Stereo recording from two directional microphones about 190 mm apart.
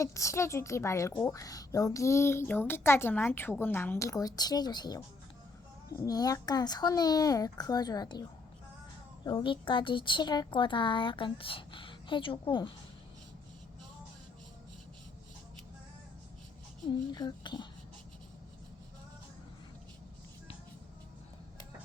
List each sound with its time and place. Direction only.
0.0 s a woman's voice: 15° left (ahead or behind)
9.2 s a woman's voice: 25° left (ahead or behind)
17.1 s a woman's voice: 20° left (ahead or behind)